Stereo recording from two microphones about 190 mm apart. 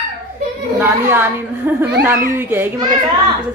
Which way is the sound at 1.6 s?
10° right (ahead or behind).